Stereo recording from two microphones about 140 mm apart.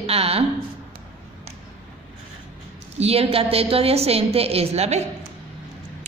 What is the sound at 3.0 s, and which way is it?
A woman's voice, 45° right (ahead or behind).